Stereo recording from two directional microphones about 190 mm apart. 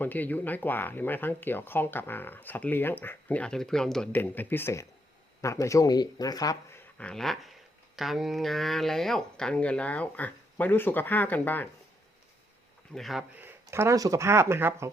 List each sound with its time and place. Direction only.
0.0 s speech: 10° left (ahead or behind)
7.0 s speech: 5° left (ahead or behind)
12.9 s speech: centre (ahead or behind)
13.4 s speech: 10° right (ahead or behind)